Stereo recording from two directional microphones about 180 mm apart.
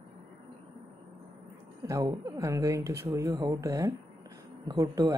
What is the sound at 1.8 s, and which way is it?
Speech, 20° right (ahead or behind).